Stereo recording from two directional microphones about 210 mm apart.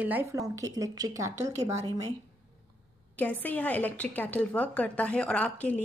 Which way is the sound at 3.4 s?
10° left (ahead or behind).